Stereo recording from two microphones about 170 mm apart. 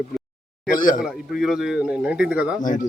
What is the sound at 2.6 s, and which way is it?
Speech, 50° left (ahead or behind).